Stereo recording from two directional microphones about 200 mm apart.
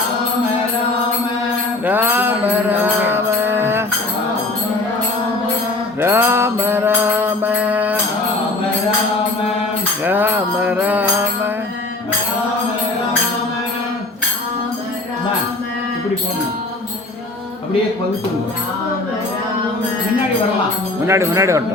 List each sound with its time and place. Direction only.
1.8 s music: 10° right (ahead or behind)
6.0 s music: 10° right (ahead or behind)
10.0 s music: 10° right (ahead or behind)
21.1 s speech: 15° right (ahead or behind)